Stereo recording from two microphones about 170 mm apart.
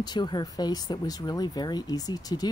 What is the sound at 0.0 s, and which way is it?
Speech, 25° left (ahead or behind).